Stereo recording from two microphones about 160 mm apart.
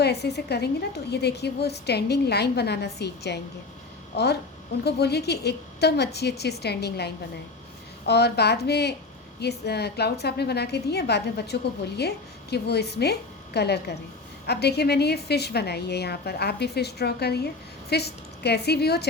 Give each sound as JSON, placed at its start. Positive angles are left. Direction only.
{"t": 0.0, "sound": "a woman's voice", "side_deg": 90}